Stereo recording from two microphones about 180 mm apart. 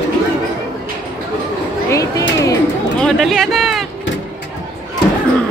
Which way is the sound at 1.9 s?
20° left (ahead or behind).